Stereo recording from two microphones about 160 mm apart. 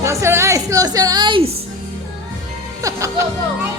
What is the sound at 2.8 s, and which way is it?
Speech, 20° right (ahead or behind).